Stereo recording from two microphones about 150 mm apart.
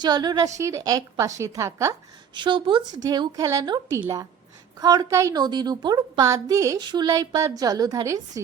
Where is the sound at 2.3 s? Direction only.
30° right (ahead or behind).